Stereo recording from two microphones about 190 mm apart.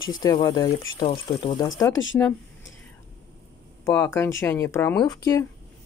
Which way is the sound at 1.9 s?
85° left.